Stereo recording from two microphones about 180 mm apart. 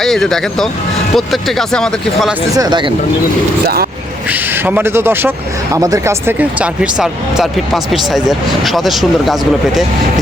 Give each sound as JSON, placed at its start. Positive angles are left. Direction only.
{"t": 0.0, "sound": "speech", "side_deg": 0}
{"t": 2.6, "sound": "speech", "side_deg": -25}
{"t": 4.3, "sound": "speech", "side_deg": -10}